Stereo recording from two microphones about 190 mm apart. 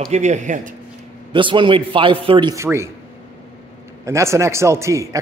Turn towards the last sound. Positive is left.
turn(degrees=-15)  # may be behind; listen again after turning